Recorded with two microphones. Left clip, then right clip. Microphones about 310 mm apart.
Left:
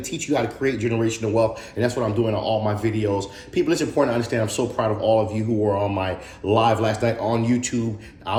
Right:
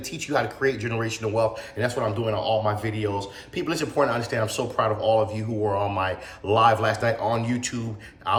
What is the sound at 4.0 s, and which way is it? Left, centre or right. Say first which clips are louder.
A man's voice: right 1 dB; centre.